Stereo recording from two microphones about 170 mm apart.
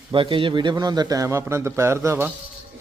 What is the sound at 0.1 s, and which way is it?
A man's voice, 30° right (ahead or behind).